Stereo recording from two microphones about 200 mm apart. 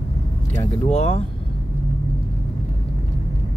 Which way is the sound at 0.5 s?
35° left (ahead or behind).